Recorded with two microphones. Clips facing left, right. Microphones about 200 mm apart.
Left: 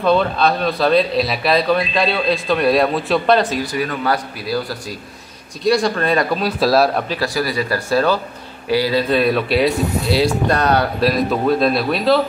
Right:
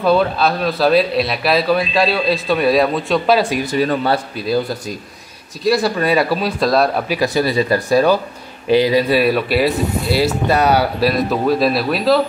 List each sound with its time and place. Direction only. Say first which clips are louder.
0.0 s a man's voice: right 1 dB; 5° right (ahead or behind)
3.6 s speech: right 4 dB; 30° right (ahead or behind)
5.6 s a man's voice: even; 5° right (ahead or behind)
7.1 s a man's voice: right 4 dB; 20° right (ahead or behind); by 12.2 s centre (ahead or behind)